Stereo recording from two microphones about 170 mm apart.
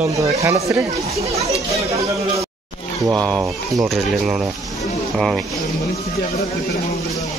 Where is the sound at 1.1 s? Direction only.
35° right (ahead or behind).